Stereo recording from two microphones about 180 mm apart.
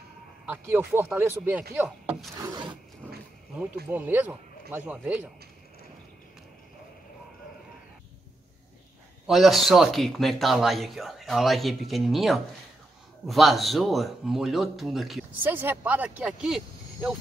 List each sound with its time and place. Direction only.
0.5 s speech: 10° right (ahead or behind)
2.3 s wood: 25° right (ahead or behind)
3.9 s speech: 10° right (ahead or behind)
9.2 s speech: centre (ahead or behind)